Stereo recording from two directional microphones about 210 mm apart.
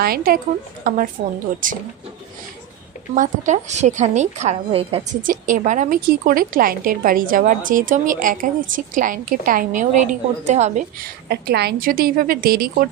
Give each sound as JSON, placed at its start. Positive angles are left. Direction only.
{"t": 0.0, "sound": "a woman's voice", "side_deg": -45}
{"t": 3.2, "sound": "speech", "side_deg": -35}
{"t": 5.2, "sound": "speech", "side_deg": -40}
{"t": 11.3, "sound": "a woman's voice", "side_deg": -50}